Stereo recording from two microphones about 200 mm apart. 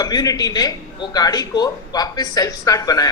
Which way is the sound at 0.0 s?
20° left (ahead or behind).